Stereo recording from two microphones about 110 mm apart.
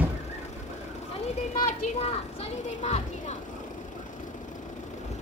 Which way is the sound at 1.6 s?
80° left.